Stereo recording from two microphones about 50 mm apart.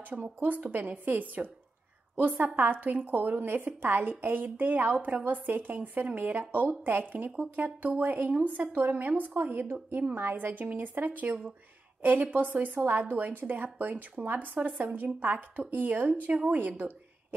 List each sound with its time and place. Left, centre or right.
0.1 s a woman's voice: right